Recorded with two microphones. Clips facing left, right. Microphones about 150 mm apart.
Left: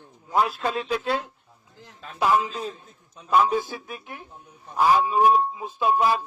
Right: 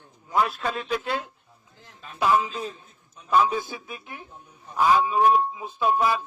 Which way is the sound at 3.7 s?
Centre (ahead or behind).